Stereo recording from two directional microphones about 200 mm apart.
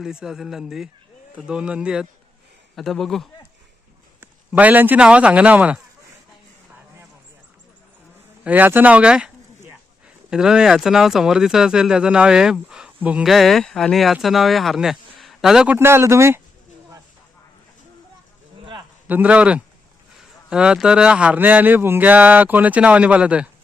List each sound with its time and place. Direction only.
0.0 s speech: 5° right (ahead or behind)
8.4 s speech: 10° right (ahead or behind)
18.6 s a sound: 25° right (ahead or behind)
19.0 s speech: 10° right (ahead or behind)